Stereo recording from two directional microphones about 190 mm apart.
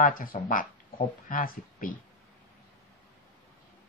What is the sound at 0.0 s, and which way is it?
Speech, 45° left (ahead or behind).